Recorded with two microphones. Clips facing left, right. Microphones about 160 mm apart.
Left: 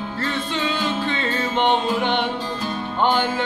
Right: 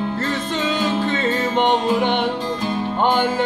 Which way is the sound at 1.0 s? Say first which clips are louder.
Right 4 dB; 45° right (ahead or behind).